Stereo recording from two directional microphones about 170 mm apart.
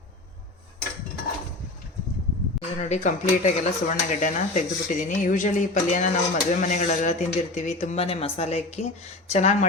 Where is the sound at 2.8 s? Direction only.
45° left (ahead or behind).